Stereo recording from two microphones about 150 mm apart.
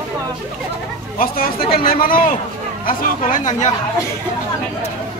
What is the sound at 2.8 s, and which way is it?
Speech, 60° left (ahead or behind).